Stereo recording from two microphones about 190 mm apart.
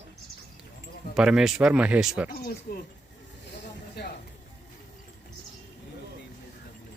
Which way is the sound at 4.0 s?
60° left (ahead or behind).